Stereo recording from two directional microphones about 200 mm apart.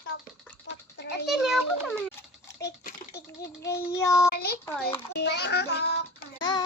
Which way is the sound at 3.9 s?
15° left (ahead or behind).